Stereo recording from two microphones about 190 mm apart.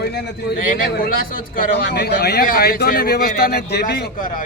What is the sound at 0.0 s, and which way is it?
Speech, 60° left (ahead or behind).